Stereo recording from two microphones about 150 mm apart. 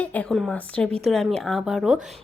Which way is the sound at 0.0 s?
10° left (ahead or behind).